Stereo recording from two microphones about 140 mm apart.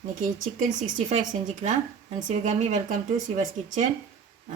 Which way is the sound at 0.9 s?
65° right (ahead or behind).